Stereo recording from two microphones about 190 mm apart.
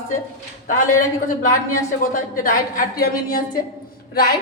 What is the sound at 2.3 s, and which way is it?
A woman's voice, 50° left (ahead or behind).